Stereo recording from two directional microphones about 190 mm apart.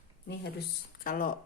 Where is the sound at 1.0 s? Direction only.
45° left (ahead or behind).